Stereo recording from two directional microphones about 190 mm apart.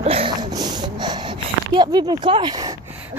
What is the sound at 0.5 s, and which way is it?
Snort, 20° right (ahead or behind).